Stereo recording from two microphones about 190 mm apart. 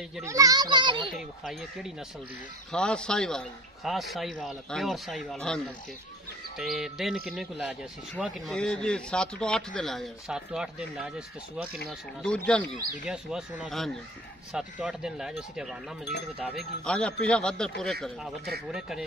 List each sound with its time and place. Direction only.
0.2 s a child's voice: 15° right (ahead or behind)
1.4 s speech: centre (ahead or behind)
6.6 s speech: centre (ahead or behind)